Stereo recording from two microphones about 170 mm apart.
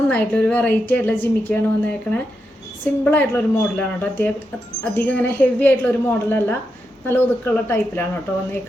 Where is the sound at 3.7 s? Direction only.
10° left (ahead or behind).